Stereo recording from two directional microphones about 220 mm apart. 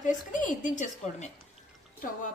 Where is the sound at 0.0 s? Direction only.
35° left (ahead or behind).